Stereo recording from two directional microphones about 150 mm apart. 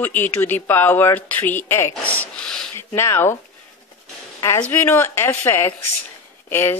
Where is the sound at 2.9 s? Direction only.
15° left (ahead or behind).